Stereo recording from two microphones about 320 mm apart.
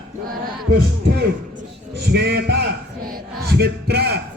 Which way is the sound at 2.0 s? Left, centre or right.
Right.